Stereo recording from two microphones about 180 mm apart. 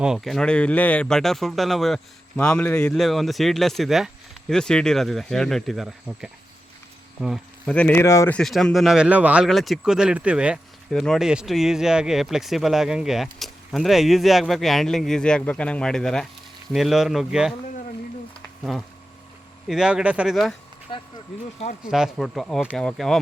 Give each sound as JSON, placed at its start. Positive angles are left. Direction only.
{"t": 0.0, "sound": "speech", "side_deg": 0}
{"t": 8.4, "sound": "speech", "side_deg": 5}
{"t": 18.6, "sound": "speech", "side_deg": 0}
{"t": 20.9, "sound": "speech", "side_deg": 25}
{"t": 21.8, "sound": "speech", "side_deg": -5}